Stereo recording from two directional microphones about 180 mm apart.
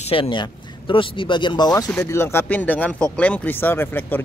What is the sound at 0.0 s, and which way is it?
Speech, 30° left (ahead or behind).